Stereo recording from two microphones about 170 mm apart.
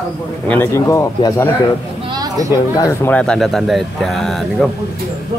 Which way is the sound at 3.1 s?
5° left (ahead or behind).